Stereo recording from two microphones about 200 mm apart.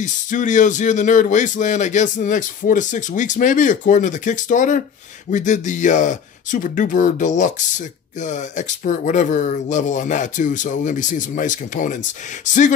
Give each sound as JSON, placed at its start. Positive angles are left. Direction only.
{"t": 0.0, "sound": "speech", "side_deg": 40}